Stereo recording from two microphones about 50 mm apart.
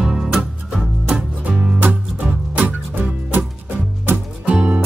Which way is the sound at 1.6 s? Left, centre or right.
Right.